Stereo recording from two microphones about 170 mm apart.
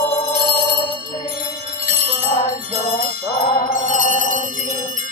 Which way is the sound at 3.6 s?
45° left (ahead or behind).